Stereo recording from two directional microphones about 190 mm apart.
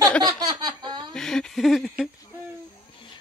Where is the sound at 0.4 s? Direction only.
20° right (ahead or behind).